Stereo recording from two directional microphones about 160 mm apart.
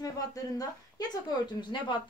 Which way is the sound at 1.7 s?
30° left (ahead or behind).